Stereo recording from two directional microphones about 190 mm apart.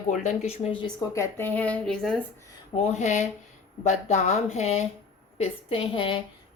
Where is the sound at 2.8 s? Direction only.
35° left (ahead or behind).